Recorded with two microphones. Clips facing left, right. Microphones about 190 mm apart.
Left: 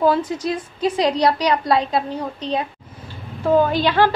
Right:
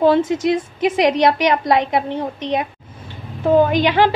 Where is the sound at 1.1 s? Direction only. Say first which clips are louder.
Right 2 dB; 20° right (ahead or behind).